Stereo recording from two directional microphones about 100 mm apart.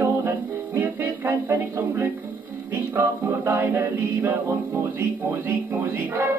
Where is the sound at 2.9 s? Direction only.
20° right (ahead or behind).